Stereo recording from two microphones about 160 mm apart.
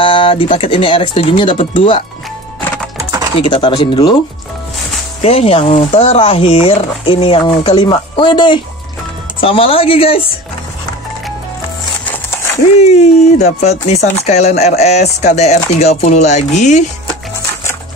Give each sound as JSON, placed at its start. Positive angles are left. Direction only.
{"t": 0.0, "sound": "speech", "side_deg": 35}
{"t": 3.0, "sound": "typing", "side_deg": -20}
{"t": 3.3, "sound": "speech", "side_deg": 30}
{"t": 5.2, "sound": "speech", "side_deg": 40}
{"t": 12.7, "sound": "music", "side_deg": 45}
{"t": 14.1, "sound": "speech", "side_deg": 40}